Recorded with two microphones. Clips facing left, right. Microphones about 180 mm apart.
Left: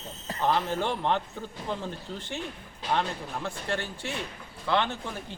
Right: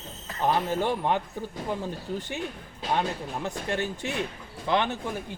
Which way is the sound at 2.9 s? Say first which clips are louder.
Right 1 dB; 15° right (ahead or behind).